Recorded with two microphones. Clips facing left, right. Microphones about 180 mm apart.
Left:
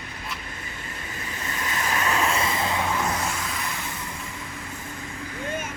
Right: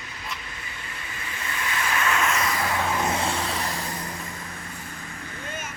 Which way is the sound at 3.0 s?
30° right (ahead or behind).